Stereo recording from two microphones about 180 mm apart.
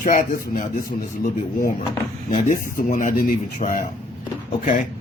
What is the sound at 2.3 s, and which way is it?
Speech, 40° left (ahead or behind).